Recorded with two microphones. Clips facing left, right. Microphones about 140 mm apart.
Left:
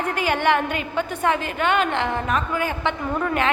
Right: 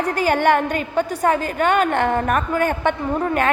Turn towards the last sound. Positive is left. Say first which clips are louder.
# right 3 dB
turn(degrees=-40)  # may be behind; listen again after turning